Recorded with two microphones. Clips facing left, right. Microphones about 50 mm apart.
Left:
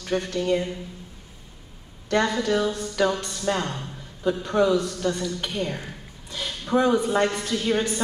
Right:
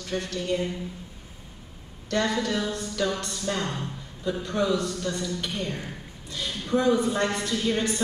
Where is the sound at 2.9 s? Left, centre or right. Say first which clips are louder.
Left 4 dB; left.